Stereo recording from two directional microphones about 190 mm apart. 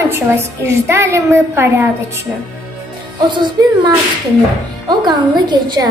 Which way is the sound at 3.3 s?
25° right (ahead or behind).